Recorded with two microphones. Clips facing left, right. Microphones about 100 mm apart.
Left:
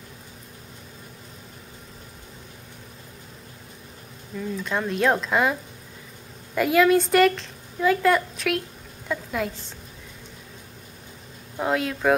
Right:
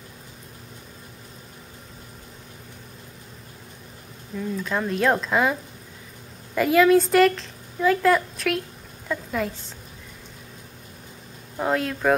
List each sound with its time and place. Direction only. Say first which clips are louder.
4.4 s a woman's voice: right 1 dB; centre (ahead or behind)
11.5 s speech: even; centre (ahead or behind)